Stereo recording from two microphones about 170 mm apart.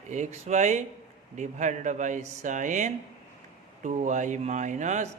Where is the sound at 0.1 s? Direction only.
45° right (ahead or behind).